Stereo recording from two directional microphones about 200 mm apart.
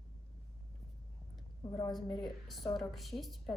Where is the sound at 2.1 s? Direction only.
25° left (ahead or behind).